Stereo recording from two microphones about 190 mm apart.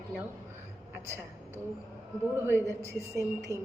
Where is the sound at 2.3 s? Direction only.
10° right (ahead or behind).